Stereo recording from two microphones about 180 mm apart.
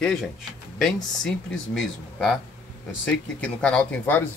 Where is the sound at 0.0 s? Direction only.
Centre (ahead or behind).